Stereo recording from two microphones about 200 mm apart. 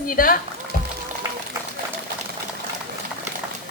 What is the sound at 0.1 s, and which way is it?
Speech, 45° left (ahead or behind).